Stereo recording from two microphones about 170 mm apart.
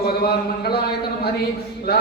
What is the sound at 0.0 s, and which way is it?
Speech, 65° left (ahead or behind).